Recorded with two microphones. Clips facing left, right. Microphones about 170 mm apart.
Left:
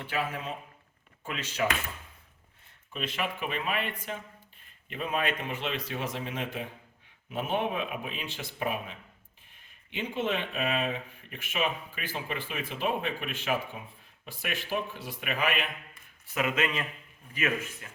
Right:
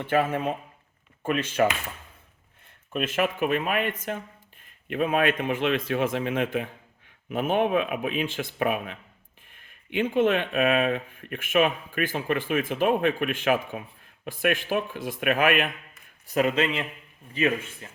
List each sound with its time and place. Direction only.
0.1 s speech: 55° right (ahead or behind)
2.9 s speech: 50° right (ahead or behind)
16.2 s speech: 40° right (ahead or behind)